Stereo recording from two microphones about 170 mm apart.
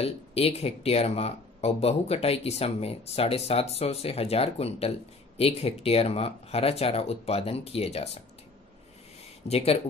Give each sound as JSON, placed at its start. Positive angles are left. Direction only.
{"t": 0.0, "sound": "speech", "side_deg": 35}
{"t": 9.5, "sound": "speech", "side_deg": 35}